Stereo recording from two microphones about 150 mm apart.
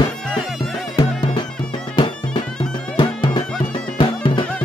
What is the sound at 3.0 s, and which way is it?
Music, 30° left (ahead or behind).